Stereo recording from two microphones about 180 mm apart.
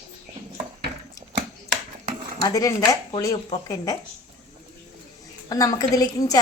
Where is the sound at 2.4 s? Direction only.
20° left (ahead or behind).